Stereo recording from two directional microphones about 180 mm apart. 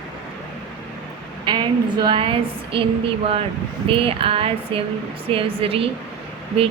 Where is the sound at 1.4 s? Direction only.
25° right (ahead or behind).